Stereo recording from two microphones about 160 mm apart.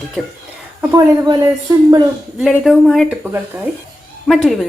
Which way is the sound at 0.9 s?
20° right (ahead or behind).